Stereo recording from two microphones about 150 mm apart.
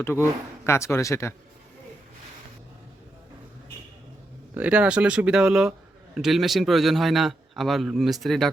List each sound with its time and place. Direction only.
0.0 s speech: 15° left (ahead or behind)
4.5 s a man's voice: 10° right (ahead or behind)